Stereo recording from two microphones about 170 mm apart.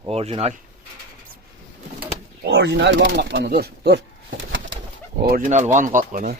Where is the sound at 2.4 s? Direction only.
90° right.